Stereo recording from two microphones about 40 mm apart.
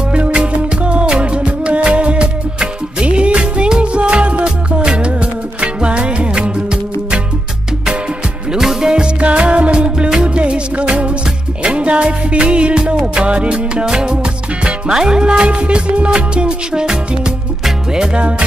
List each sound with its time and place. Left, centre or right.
0.1 s music: right
8.5 s music: centre
8.9 s music: right
13.8 s music: centre
14.1 s music: right